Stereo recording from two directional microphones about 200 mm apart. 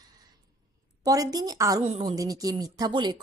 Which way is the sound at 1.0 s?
20° right (ahead or behind).